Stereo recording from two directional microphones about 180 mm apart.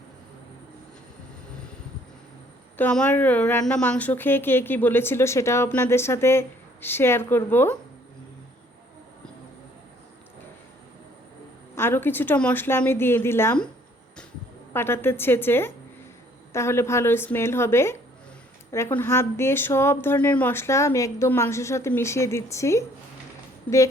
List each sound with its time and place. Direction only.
2.7 s a woman's voice: 5° left (ahead or behind)
11.7 s a woman's voice: 10° left (ahead or behind)
14.7 s a woman's voice: 15° left (ahead or behind)